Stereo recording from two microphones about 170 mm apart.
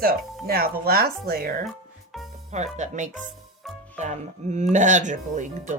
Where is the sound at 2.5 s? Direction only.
45° right (ahead or behind).